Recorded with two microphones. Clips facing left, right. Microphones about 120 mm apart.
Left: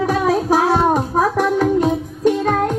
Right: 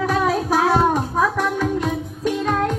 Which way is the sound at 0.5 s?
40° left (ahead or behind).